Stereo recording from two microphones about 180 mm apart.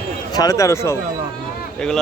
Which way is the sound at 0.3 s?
20° left (ahead or behind).